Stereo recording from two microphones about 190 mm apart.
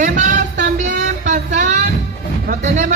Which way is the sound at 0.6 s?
40° right (ahead or behind).